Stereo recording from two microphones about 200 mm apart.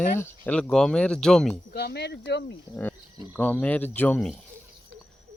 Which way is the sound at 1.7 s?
55° left (ahead or behind).